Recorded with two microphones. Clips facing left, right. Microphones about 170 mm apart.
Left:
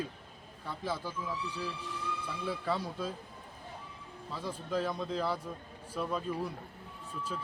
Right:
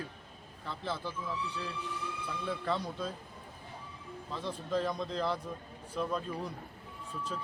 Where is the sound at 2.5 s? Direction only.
5° left (ahead or behind).